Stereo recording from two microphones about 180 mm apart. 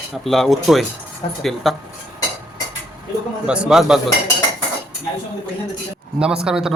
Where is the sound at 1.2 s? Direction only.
30° left (ahead or behind).